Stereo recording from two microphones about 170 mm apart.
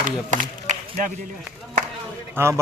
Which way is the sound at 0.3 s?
45° right (ahead or behind).